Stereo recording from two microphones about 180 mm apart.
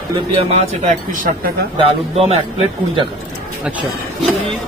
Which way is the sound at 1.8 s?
35° right (ahead or behind).